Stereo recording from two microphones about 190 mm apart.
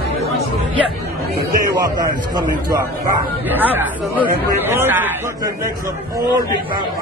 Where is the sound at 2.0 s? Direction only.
20° right (ahead or behind).